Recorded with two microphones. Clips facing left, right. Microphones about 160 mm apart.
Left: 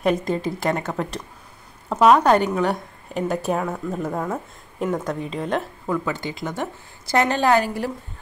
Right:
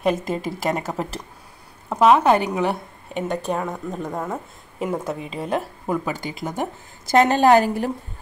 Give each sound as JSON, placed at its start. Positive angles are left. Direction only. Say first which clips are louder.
{"t": 0.0, "sound": "a woman's voice", "louder": "left 1 dB", "side_deg": 0}
{"t": 7.5, "sound": "a woman's voice", "louder": "right 3 dB", "side_deg": -45}